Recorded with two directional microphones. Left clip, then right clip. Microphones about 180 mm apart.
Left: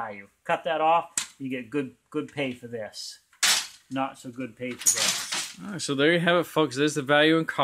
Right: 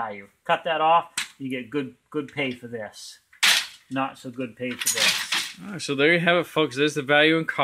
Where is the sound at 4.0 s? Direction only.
25° right (ahead or behind).